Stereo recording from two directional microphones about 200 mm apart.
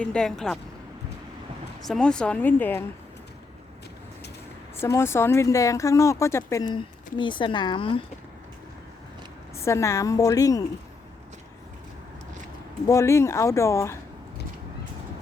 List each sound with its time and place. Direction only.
0.0 s speech: 5° left (ahead or behind)
1.9 s speech: 5° left (ahead or behind)
4.8 s speech: 15° left (ahead or behind)
9.6 s speech: 15° left (ahead or behind)
12.9 s speech: 15° left (ahead or behind)